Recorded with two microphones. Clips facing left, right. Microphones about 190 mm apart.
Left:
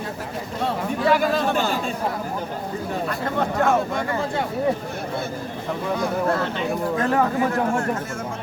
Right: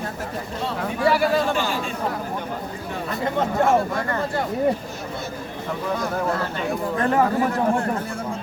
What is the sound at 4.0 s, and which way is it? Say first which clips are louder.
Speech: even; 5° left (ahead or behind).